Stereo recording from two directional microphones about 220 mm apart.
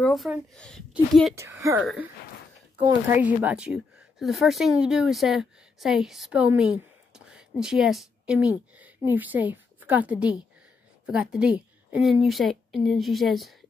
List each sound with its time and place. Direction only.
0.0 s a woman's voice: centre (ahead or behind)
1.3 s speech: 15° right (ahead or behind)
3.1 s a woman's voice: 5° right (ahead or behind)